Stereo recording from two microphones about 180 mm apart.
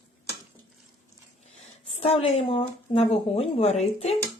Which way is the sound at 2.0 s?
35° left (ahead or behind).